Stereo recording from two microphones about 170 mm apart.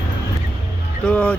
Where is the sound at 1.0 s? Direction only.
5° left (ahead or behind).